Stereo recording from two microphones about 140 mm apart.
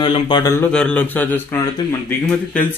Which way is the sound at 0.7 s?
5° left (ahead or behind).